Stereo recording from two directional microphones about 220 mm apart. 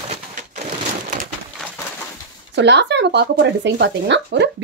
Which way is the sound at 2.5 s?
50° right (ahead or behind).